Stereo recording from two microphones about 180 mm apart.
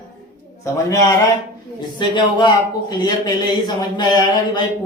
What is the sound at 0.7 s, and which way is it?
Speech, 20° left (ahead or behind).